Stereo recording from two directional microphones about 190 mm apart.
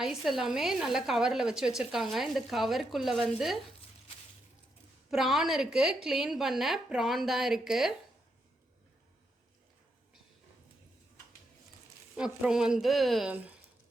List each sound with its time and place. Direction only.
0.0 s a woman's voice: centre (ahead or behind)
5.1 s a woman's voice: centre (ahead or behind)
12.1 s a woman's voice: 5° right (ahead or behind)